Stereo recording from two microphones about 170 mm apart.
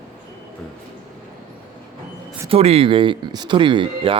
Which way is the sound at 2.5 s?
35° right (ahead or behind).